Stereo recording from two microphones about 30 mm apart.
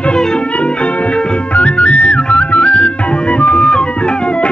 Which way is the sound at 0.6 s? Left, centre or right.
Left.